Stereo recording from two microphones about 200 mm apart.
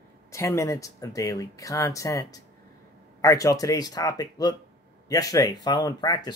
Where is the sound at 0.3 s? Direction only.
15° left (ahead or behind).